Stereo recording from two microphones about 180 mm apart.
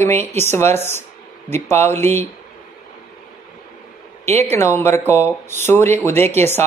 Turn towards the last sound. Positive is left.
turn(degrees=15)  # may be behind; listen again after turning